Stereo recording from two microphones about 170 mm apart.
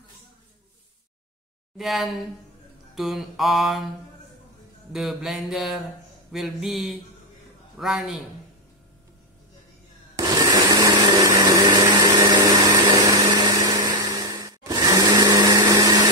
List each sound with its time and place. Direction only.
1.8 s mantra: centre (ahead or behind)
4.9 s mantra: centre (ahead or behind)
10.1 s blender: 20° right (ahead or behind)